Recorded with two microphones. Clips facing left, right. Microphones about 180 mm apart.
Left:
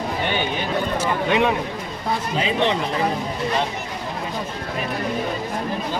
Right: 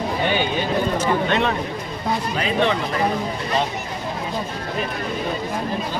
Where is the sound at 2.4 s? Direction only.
20° left (ahead or behind).